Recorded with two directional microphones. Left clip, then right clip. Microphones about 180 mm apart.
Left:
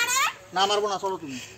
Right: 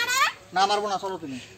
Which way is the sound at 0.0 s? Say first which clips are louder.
Right 1 dB; 10° left (ahead or behind).